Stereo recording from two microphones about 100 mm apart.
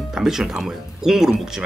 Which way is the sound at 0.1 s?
5° right (ahead or behind).